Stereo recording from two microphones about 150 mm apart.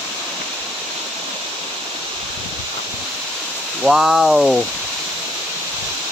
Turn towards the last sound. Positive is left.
turn(degrees=-5)  # may be behind; listen again after turning